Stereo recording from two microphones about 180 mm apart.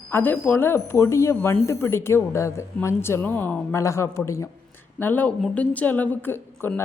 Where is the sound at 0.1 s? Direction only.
10° left (ahead or behind).